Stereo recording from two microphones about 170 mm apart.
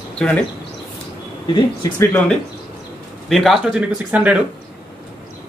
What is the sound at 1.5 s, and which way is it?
Speech, 15° left (ahead or behind).